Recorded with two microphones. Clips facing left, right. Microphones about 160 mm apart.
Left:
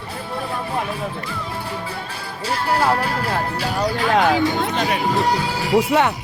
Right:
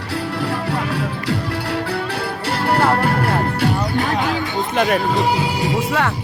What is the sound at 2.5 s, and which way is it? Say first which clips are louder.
Music: right 2 dB; 65° right (ahead or behind).